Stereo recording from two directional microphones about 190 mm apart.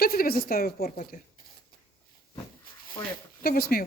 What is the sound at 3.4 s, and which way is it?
Speech, 50° left (ahead or behind).